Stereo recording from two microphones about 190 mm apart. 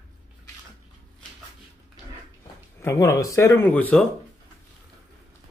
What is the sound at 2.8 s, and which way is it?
Speech, 15° left (ahead or behind).